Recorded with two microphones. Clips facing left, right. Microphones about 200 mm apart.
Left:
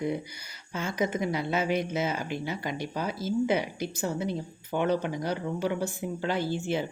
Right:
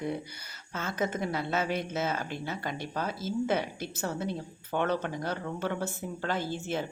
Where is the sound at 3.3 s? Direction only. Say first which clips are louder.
Left 3 dB; 55° right (ahead or behind).